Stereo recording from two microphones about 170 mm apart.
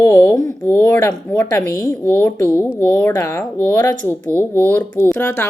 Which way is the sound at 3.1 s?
15° left (ahead or behind).